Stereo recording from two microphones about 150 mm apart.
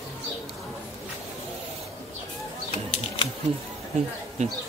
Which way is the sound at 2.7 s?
45° left (ahead or behind).